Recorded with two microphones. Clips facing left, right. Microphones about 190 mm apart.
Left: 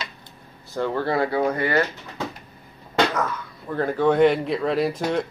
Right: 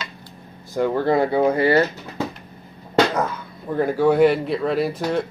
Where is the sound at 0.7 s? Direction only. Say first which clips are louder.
Right 4 dB; 15° right (ahead or behind); by 1.9 s 30° right (ahead or behind).